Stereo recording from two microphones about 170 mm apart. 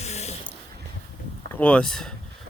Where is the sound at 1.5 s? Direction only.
10° left (ahead or behind).